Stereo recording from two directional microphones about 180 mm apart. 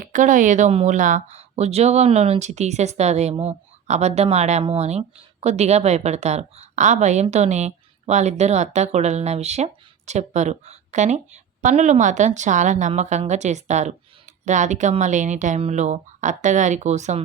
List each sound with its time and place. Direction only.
0.0 s a woman's voice: 45° right (ahead or behind)